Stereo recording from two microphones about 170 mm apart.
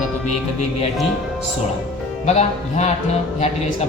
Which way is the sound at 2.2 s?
40° left (ahead or behind).